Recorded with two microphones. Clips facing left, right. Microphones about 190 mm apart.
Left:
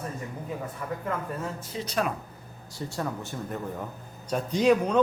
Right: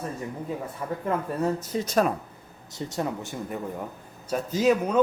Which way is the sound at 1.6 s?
45° right (ahead or behind).